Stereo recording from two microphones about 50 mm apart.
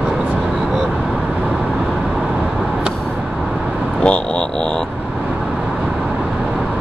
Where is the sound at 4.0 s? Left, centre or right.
Centre.